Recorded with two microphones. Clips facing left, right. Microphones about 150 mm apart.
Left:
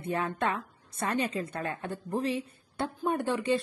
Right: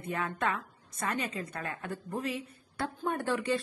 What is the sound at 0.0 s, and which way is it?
A woman's voice, 30° left (ahead or behind).